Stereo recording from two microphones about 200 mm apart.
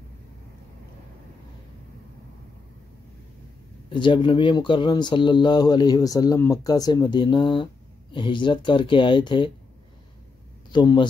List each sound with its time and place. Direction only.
3.9 s speech: 25° left (ahead or behind)
10.7 s speech: 20° left (ahead or behind)